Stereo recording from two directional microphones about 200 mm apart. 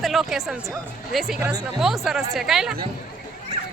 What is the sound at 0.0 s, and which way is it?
Speech, centre (ahead or behind).